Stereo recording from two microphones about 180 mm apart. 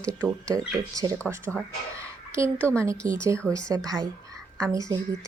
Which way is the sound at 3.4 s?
5° left (ahead or behind).